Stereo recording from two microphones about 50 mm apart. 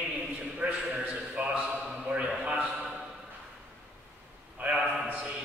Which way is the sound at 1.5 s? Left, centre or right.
Right.